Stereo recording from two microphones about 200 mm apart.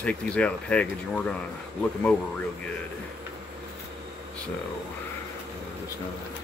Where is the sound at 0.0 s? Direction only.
5° left (ahead or behind).